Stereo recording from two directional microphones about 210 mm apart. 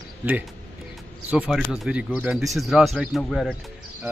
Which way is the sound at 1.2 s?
5° right (ahead or behind).